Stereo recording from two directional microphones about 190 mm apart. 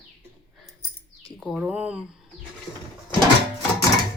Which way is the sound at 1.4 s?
Centre (ahead or behind).